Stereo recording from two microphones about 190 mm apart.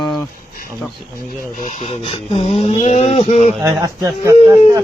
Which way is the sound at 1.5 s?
40° left (ahead or behind).